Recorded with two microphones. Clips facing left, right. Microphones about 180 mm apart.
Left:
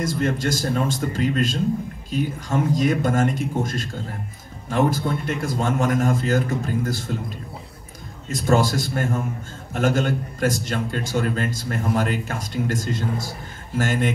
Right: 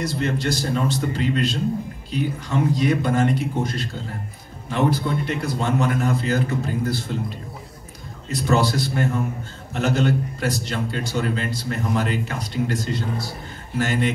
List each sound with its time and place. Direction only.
0.0 s a man's voice: 45° left (ahead or behind)
8.3 s a man's voice: 45° left (ahead or behind)